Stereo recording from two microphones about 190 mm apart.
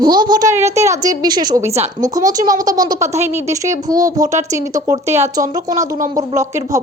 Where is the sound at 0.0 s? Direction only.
20° right (ahead or behind).